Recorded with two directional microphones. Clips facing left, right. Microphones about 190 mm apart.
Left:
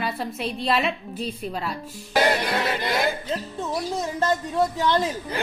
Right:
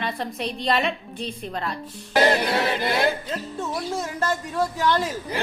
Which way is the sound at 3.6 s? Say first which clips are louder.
Even; 20° left (ahead or behind).